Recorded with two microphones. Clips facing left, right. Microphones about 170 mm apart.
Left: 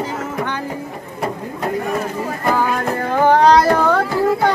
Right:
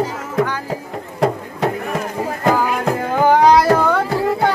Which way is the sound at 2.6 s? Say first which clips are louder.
Even; 5° right (ahead or behind).